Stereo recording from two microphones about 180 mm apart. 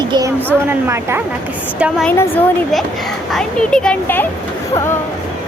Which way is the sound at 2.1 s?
10° left (ahead or behind).